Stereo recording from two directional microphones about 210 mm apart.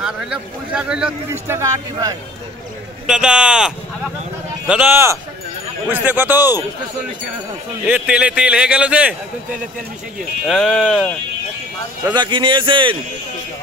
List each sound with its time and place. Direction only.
0.0 s speech: 5° right (ahead or behind)
3.1 s speech: 5° right (ahead or behind)
7.8 s speech: 5° right (ahead or behind)
10.4 s speech: centre (ahead or behind)
12.0 s a man's voice: 20° right (ahead or behind)